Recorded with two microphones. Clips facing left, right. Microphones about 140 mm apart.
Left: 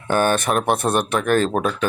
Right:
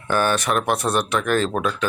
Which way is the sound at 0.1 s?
45° left (ahead or behind).